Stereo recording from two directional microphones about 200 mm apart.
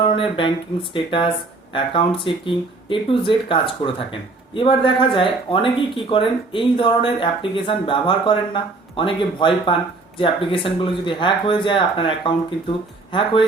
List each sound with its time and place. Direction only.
0.0 s speech: 25° left (ahead or behind)